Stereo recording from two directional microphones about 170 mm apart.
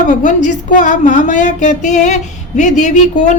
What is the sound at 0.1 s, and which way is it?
A woman's voice, 50° left (ahead or behind).